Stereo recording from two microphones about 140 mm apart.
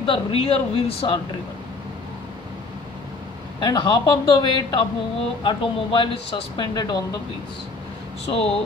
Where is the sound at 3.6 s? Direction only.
30° left (ahead or behind).